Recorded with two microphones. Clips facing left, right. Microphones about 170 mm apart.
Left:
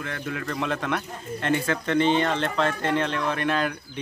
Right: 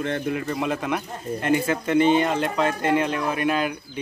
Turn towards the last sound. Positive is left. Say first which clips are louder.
# right 2 dB
turn(degrees=-10)  # may be behind; listen again after turning